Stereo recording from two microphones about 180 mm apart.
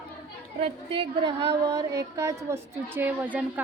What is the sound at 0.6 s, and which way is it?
A woman's voice, 30° right (ahead or behind).